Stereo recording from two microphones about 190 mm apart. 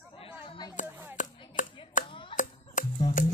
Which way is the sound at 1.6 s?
45° left (ahead or behind).